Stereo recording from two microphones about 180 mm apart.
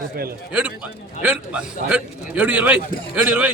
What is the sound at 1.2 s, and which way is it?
A man's voice, 5° right (ahead or behind).